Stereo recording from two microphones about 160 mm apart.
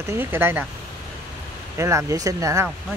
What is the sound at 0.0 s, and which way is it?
Speech, 15° right (ahead or behind).